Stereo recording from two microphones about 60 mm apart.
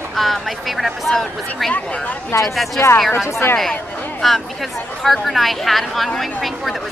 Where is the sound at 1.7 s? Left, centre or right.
Left.